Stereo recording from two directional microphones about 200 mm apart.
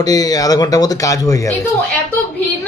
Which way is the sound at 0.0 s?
20° left (ahead or behind).